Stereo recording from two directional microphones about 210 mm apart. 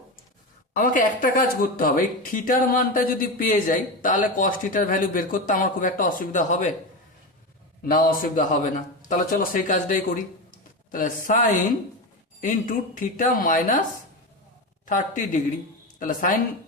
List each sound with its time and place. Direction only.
0.7 s a man's voice: 40° left (ahead or behind)
7.9 s a man's voice: 40° left (ahead or behind)
14.8 s a man's voice: 40° left (ahead or behind)